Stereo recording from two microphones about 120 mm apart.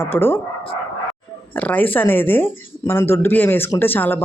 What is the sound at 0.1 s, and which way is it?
A woman's voice, 15° left (ahead or behind).